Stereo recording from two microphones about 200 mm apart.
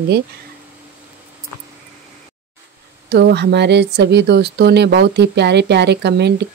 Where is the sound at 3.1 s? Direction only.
55° right (ahead or behind).